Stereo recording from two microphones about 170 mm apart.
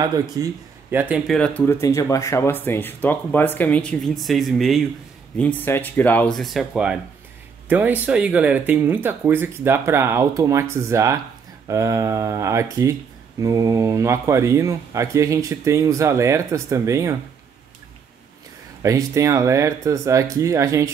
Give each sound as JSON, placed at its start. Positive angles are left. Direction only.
{"t": 0.4, "sound": "speech", "side_deg": -20}
{"t": 0.9, "sound": "speech", "side_deg": -10}
{"t": 1.3, "sound": "speech", "side_deg": 5}
{"t": 1.7, "sound": "speech", "side_deg": 15}
{"t": 5.4, "sound": "speech", "side_deg": 10}
{"t": 18.8, "sound": "speech", "side_deg": -20}